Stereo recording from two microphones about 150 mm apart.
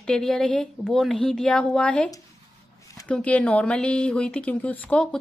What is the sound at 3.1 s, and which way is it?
A woman's voice, 10° left (ahead or behind).